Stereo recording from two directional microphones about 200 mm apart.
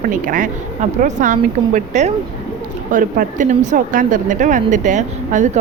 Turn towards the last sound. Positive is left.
turn(degrees=-40)  # may be behind; listen again after turning